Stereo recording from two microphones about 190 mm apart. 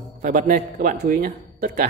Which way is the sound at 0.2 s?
50° right (ahead or behind).